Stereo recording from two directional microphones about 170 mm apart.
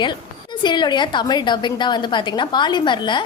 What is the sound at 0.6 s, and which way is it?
A woman's voice, 25° left (ahead or behind).